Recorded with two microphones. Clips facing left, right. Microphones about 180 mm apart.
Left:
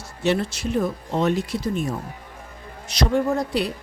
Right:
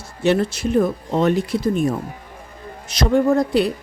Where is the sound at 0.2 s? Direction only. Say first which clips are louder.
Right 4 dB; 55° right (ahead or behind).